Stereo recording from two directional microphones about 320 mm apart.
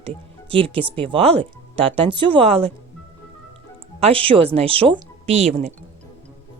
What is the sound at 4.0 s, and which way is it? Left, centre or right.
Speech, centre.